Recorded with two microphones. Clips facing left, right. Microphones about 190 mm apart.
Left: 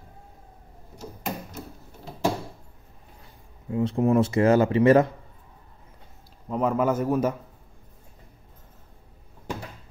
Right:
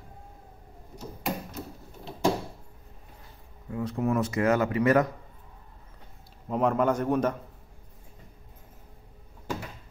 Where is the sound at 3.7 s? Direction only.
25° left (ahead or behind).